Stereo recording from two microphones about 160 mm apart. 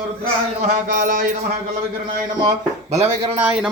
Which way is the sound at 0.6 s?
50° right (ahead or behind).